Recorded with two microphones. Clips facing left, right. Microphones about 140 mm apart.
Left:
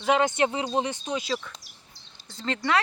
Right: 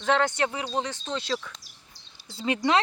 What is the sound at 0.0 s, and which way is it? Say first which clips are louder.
Speech: left 2 dB; 15° left (ahead or behind).